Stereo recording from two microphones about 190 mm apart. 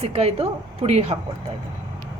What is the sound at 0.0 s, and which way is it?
A woman's voice, 35° right (ahead or behind).